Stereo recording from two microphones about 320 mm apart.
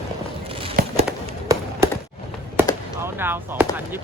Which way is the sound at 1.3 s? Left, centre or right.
Centre.